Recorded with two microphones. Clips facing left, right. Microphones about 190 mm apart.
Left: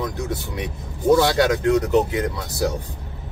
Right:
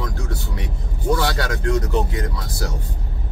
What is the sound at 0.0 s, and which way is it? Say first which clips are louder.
Vehicle: left 3 dB; 15° left (ahead or behind).